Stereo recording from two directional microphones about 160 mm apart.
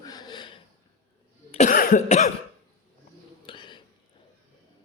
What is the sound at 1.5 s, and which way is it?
Cough, 55° left (ahead or behind).